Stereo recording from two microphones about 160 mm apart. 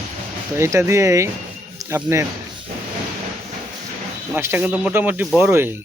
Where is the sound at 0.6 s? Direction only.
20° right (ahead or behind).